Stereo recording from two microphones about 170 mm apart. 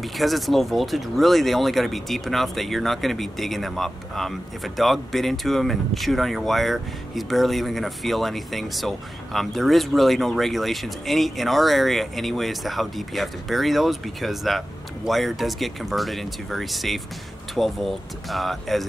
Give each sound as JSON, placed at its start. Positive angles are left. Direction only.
{"t": 0.0, "sound": "speech", "side_deg": 0}